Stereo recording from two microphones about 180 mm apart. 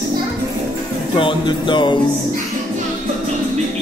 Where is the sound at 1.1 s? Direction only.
25° left (ahead or behind).